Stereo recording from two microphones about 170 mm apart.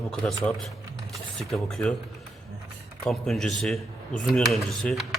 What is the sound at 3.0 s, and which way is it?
Speech, centre (ahead or behind).